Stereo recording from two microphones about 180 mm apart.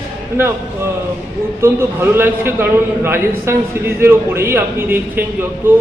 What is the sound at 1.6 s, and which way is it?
A man's voice, 15° right (ahead or behind).